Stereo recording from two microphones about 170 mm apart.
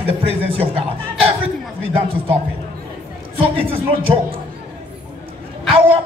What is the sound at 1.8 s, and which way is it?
Speech, 35° right (ahead or behind).